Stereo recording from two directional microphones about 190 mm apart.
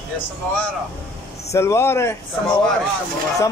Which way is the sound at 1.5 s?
15° left (ahead or behind).